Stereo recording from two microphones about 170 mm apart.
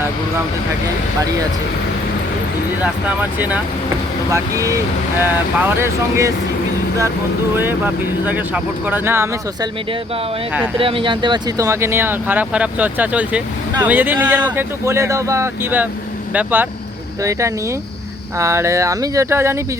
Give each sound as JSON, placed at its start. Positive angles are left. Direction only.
{"t": 3.3, "sound": "speech", "side_deg": -10}
{"t": 7.5, "sound": "speech", "side_deg": -10}
{"t": 10.8, "sound": "speech", "side_deg": -30}
{"t": 18.3, "sound": "speech", "side_deg": -15}